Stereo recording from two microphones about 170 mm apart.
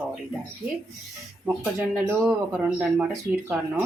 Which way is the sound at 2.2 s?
5° right (ahead or behind).